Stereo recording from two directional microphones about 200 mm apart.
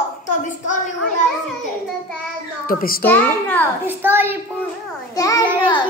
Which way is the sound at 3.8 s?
10° right (ahead or behind).